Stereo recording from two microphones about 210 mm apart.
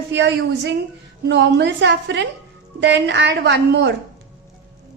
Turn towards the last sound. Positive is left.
turn(degrees=-55)  # may be behind; listen again after turning